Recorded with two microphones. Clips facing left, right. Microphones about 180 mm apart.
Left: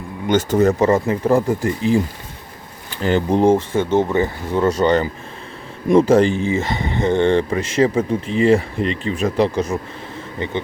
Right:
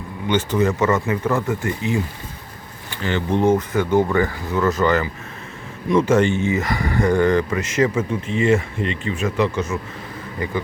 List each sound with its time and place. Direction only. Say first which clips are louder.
0.3 s speech: left 4 dB; 40° left (ahead or behind)
3.0 s speech: left 4 dB; 40° left (ahead or behind)